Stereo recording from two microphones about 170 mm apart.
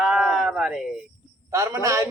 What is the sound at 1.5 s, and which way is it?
Speech, 20° right (ahead or behind).